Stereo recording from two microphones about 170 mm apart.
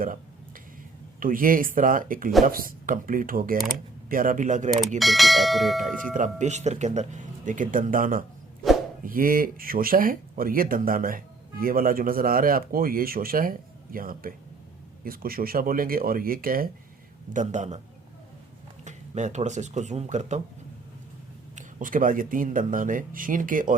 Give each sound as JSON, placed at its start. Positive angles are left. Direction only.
{"t": 1.2, "sound": "speech", "side_deg": -55}
{"t": 4.9, "sound": "speech", "side_deg": 0}
{"t": 6.1, "sound": "speech", "side_deg": -45}
{"t": 17.3, "sound": "speech", "side_deg": -45}
{"t": 18.9, "sound": "speech", "side_deg": -45}
{"t": 21.5, "sound": "speech", "side_deg": -50}